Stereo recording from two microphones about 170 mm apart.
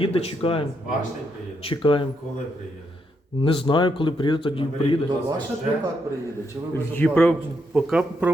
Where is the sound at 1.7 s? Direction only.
30° left (ahead or behind).